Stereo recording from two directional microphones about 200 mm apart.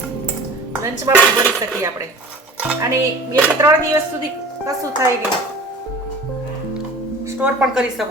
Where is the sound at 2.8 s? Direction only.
15° right (ahead or behind).